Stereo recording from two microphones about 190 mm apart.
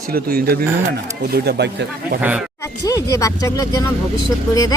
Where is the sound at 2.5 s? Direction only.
15° left (ahead or behind).